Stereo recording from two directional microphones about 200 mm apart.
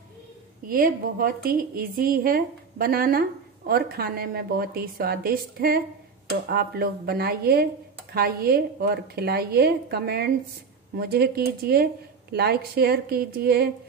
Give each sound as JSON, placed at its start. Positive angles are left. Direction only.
{"t": 0.7, "sound": "a woman's voice", "side_deg": -45}